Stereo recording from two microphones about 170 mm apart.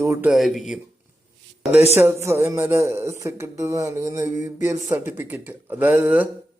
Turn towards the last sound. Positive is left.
turn(degrees=-10)  # may be behind; listen again after turning